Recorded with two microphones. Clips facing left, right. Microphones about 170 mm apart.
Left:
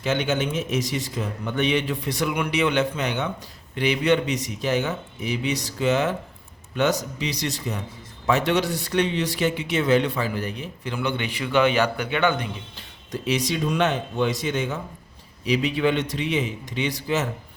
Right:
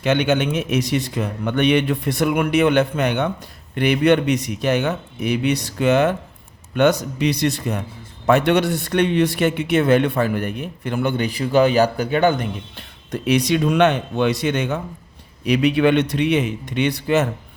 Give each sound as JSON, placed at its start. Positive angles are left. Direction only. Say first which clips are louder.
{"t": 0.0, "sound": "a man's voice", "louder": "right 5 dB", "side_deg": -65}
{"t": 12.7, "sound": "a man's voice", "louder": "right 4 dB", "side_deg": -60}